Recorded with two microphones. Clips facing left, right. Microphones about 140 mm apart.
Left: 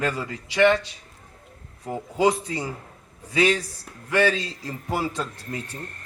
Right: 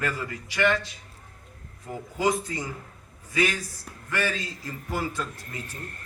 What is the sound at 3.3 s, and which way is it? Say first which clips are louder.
Speech: left 5 dB; 25° left (ahead or behind).